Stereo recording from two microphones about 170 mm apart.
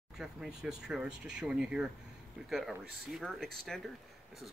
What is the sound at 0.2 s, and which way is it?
Speech, 5° right (ahead or behind).